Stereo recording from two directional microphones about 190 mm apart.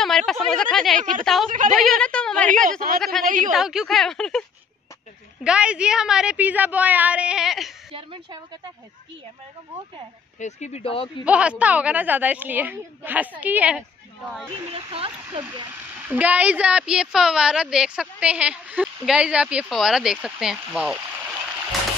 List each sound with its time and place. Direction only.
0.0 s a woman's voice: centre (ahead or behind)
1.5 s a woman's voice: 45° right (ahead or behind)
1.9 s a woman's voice: 5° left (ahead or behind)
3.3 s a woman's voice: 45° right (ahead or behind)
3.5 s a woman's voice: centre (ahead or behind)
7.9 s a sound: 25° right (ahead or behind)
10.4 s speech: 35° left (ahead or behind)
11.2 s a woman's voice: 5° right (ahead or behind)
14.5 s speech: 30° right (ahead or behind)
16.1 s a woman's voice: 10° right (ahead or behind)